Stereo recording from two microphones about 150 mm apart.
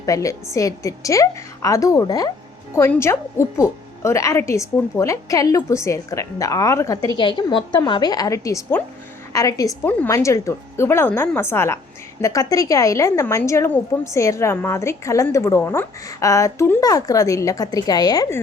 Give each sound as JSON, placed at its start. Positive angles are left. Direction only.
{"t": 0.0, "sound": "a woman's voice", "side_deg": 20}
{"t": 7.2, "sound": "a woman's voice", "side_deg": 30}